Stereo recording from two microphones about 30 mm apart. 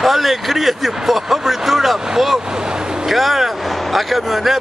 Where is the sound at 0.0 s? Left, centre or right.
Centre.